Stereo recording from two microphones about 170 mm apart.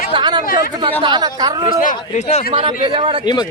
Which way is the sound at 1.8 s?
50° left (ahead or behind).